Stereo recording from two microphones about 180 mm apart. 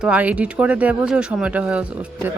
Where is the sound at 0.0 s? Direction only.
5° right (ahead or behind).